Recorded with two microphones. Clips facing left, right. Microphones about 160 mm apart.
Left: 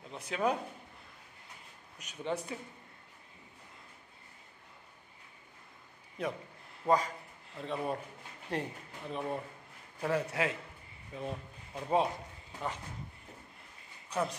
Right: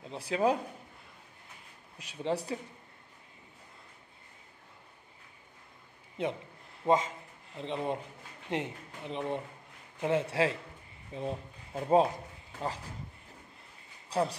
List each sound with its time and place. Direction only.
0.1 s speech: 30° right (ahead or behind)
2.0 s speech: 30° right (ahead or behind)
6.2 s a man's voice: 25° right (ahead or behind)
14.0 s a sound: 30° right (ahead or behind)